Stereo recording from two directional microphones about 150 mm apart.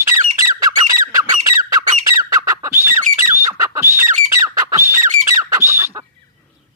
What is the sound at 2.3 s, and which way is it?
Bird, 20° right (ahead or behind).